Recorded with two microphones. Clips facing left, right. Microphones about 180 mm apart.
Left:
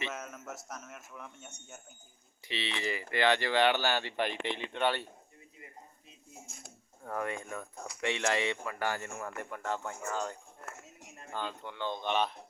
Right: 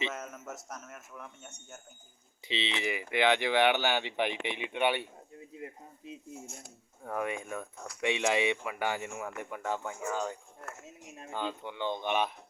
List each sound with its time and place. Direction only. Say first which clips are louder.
0.3 s a sound: right 1 dB; 10° right (ahead or behind)
0.9 s speech: right 1 dB; 5° left (ahead or behind)
2.5 s speech: right 2 dB; 20° right (ahead or behind)
7.0 s speech: right 2 dB; 10° right (ahead or behind)